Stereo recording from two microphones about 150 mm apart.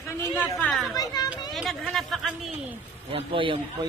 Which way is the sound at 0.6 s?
5° left (ahead or behind).